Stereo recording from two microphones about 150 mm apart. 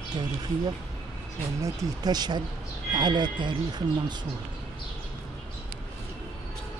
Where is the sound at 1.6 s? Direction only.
25° right (ahead or behind).